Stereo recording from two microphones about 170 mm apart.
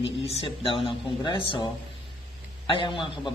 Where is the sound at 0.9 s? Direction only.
30° left (ahead or behind).